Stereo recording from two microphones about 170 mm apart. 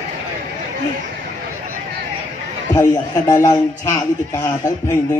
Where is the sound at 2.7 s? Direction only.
20° left (ahead or behind).